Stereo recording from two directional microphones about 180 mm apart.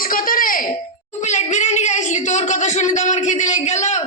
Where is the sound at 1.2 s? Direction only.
40° left (ahead or behind).